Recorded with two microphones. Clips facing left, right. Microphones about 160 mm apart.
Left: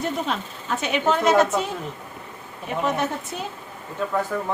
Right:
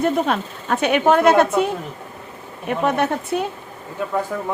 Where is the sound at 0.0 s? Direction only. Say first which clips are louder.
Right 7 dB; 60° right (ahead or behind).